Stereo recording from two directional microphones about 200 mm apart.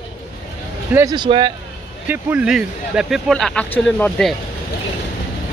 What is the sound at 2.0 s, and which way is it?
Speech, 10° right (ahead or behind).